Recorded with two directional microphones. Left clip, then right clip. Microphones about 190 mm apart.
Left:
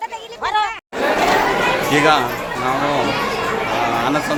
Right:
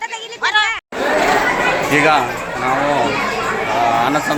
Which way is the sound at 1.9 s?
5° left (ahead or behind).